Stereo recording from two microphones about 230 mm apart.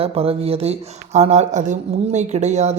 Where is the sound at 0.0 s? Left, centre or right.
Right.